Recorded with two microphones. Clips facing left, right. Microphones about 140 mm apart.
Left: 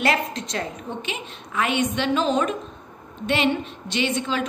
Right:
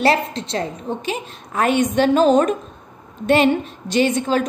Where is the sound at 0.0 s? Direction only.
30° right (ahead or behind).